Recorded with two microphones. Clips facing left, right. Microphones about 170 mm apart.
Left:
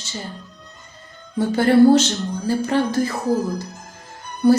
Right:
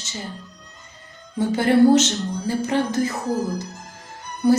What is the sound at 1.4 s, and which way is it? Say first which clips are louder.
Music: left 2 dB; 20° right (ahead or behind).